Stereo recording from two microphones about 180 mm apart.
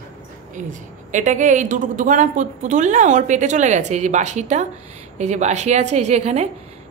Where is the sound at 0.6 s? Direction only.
45° right (ahead or behind).